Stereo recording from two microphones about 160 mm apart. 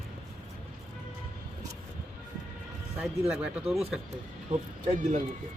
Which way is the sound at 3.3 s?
10° right (ahead or behind).